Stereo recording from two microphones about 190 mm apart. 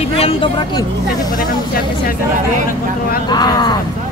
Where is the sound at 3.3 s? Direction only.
20° left (ahead or behind).